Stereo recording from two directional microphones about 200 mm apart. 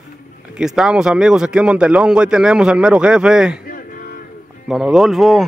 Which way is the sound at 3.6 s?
45° left (ahead or behind).